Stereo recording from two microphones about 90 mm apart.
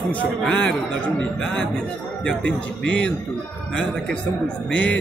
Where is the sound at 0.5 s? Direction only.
15° left (ahead or behind).